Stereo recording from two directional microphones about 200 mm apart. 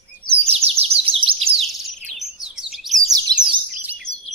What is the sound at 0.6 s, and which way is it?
Chirp, 30° right (ahead or behind).